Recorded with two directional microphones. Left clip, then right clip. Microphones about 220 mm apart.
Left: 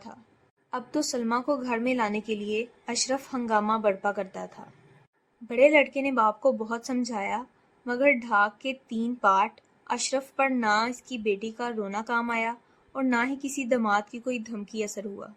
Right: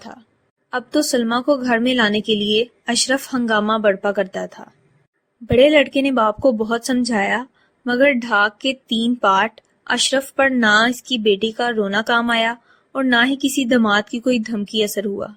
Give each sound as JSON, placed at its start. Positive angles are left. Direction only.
{"t": 0.7, "sound": "speech", "side_deg": -25}